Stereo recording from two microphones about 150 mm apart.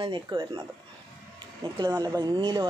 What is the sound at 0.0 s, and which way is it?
Speech, 35° right (ahead or behind).